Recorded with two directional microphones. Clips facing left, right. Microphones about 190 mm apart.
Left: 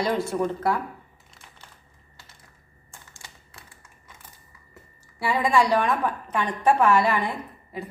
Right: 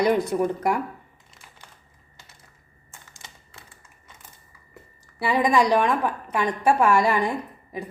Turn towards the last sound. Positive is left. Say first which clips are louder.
# right 2 dB
turn(degrees=-15)  # may be behind; listen again after turning